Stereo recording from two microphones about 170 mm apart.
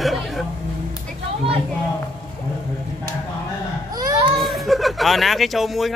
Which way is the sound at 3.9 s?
20° right (ahead or behind).